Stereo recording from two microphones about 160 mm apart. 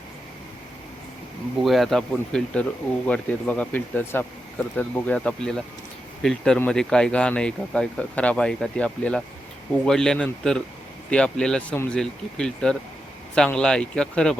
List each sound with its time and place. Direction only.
1.6 s speech: centre (ahead or behind)